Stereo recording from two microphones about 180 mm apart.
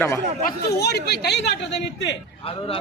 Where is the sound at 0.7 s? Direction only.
65° left (ahead or behind).